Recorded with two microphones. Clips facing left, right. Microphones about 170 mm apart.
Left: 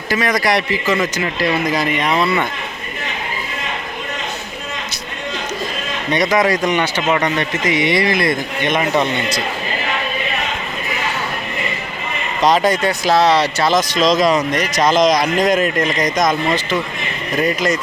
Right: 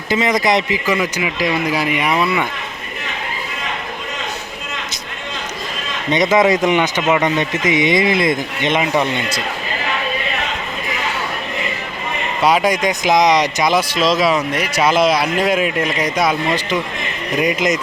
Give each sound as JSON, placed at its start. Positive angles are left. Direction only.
{"t": 0.1, "sound": "speech", "side_deg": -20}
{"t": 6.1, "sound": "speech", "side_deg": -20}
{"t": 12.4, "sound": "speech", "side_deg": -10}